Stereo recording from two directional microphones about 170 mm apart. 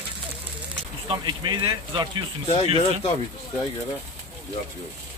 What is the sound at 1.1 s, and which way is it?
Speech, 25° right (ahead or behind).